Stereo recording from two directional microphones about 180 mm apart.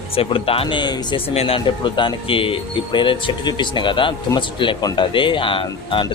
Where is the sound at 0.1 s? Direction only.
30° left (ahead or behind).